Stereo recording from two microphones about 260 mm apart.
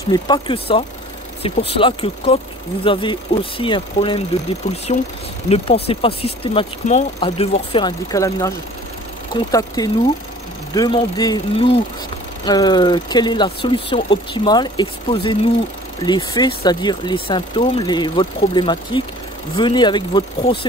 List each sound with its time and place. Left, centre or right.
0.1 s speech: centre
5.9 s speech: left